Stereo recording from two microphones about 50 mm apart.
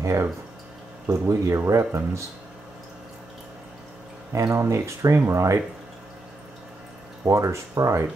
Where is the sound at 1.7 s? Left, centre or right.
Right.